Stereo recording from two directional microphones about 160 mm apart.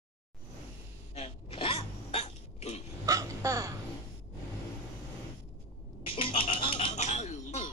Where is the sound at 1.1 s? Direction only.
35° left (ahead or behind).